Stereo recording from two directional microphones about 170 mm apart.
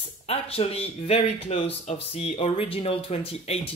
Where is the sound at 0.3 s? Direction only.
35° left (ahead or behind).